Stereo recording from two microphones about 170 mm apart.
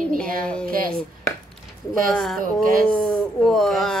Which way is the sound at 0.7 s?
55° right (ahead or behind).